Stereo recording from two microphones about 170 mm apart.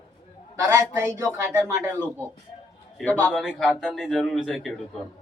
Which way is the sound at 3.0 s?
10° left (ahead or behind).